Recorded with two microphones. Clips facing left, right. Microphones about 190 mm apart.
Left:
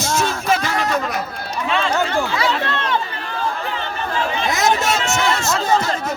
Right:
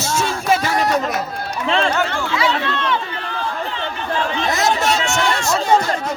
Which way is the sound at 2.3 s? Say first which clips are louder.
Right 1 dB; 45° left (ahead or behind).